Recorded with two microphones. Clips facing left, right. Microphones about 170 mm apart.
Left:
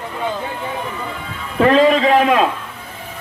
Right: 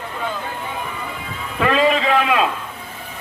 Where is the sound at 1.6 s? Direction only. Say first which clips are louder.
Left 5 dB; 40° left (ahead or behind).